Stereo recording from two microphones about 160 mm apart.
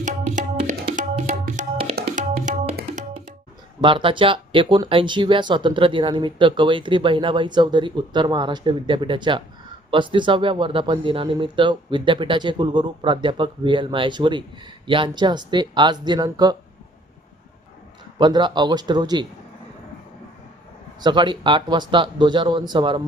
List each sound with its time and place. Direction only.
0.0 s music: 50° right (ahead or behind)
1.6 s tabla: 50° right (ahead or behind)
3.8 s speech: 30° right (ahead or behind)
18.2 s speech: 30° right (ahead or behind)
21.0 s speech: 30° right (ahead or behind)